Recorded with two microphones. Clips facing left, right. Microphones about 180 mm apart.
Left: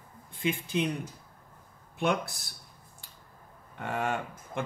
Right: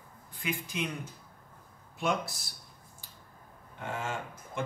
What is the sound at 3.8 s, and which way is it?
Speech, 65° left (ahead or behind).